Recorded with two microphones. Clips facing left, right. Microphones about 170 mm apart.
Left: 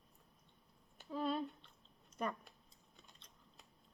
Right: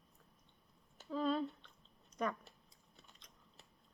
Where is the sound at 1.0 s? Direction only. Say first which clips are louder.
Right 3 dB; 10° left (ahead or behind).